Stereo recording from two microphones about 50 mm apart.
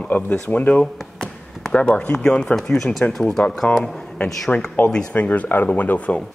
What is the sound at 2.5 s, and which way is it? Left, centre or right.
Speech, centre.